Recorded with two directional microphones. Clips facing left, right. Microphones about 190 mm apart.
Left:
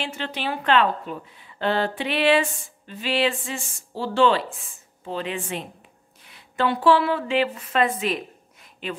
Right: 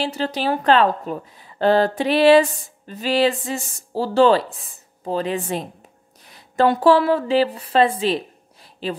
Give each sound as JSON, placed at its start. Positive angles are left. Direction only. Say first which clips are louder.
{"t": 0.0, "sound": "a woman's voice", "louder": "right 7 dB", "side_deg": -35}